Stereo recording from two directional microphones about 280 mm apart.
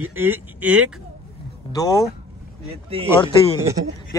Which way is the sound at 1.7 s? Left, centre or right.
Centre.